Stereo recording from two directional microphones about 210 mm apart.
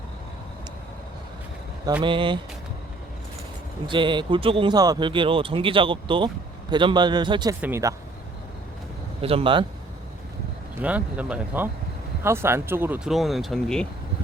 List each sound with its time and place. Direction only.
2.0 s speech: 25° right (ahead or behind)
3.8 s speech: 25° right (ahead or behind)
9.2 s speech: 25° right (ahead or behind)
10.8 s speech: 5° right (ahead or behind)